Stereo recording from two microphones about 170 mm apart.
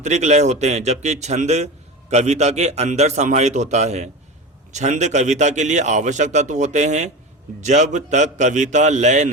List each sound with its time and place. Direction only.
0.0 s a man's voice: 40° right (ahead or behind)